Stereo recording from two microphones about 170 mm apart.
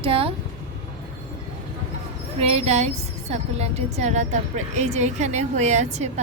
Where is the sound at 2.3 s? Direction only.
35° right (ahead or behind).